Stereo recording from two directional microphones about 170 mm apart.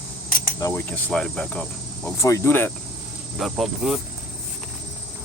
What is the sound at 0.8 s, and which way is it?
Speech, 5° left (ahead or behind).